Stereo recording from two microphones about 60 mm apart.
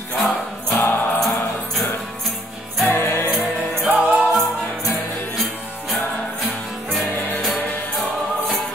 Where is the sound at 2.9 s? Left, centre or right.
Left.